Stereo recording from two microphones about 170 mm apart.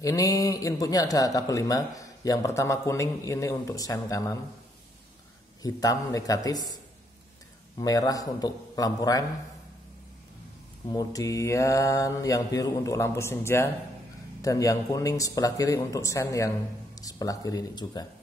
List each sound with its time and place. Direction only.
0.0 s speech: 20° left (ahead or behind)
5.6 s speech: 20° left (ahead or behind)
7.8 s speech: 20° left (ahead or behind)
10.9 s speech: 20° left (ahead or behind)